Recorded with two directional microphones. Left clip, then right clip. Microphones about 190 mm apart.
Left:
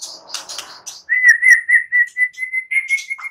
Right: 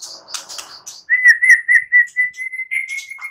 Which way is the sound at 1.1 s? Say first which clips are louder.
Even; centre (ahead or behind).